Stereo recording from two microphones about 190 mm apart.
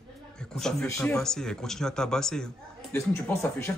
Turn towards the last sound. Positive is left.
turn(degrees=15)  # may be behind; listen again after turning